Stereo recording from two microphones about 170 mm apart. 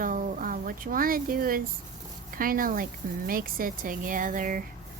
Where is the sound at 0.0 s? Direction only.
50° right (ahead or behind).